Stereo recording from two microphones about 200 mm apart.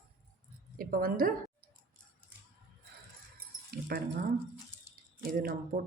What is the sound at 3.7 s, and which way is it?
Speech, 50° right (ahead or behind).